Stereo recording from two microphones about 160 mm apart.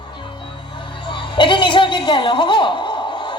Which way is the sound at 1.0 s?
30° left (ahead or behind).